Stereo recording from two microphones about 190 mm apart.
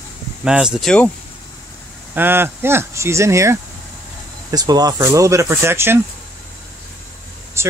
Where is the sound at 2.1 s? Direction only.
10° right (ahead or behind).